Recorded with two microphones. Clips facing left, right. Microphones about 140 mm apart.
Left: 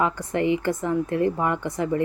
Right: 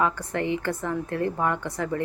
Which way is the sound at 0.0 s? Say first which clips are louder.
Left 3 dB; 15° left (ahead or behind).